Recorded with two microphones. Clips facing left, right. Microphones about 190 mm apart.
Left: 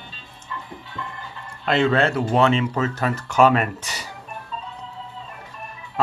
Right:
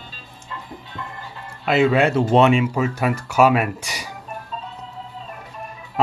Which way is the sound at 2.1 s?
25° right (ahead or behind).